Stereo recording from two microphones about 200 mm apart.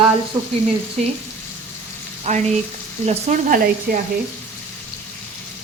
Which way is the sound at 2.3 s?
35° right (ahead or behind).